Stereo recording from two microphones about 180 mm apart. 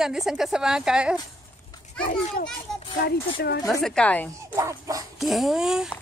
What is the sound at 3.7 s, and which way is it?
Speech, centre (ahead or behind).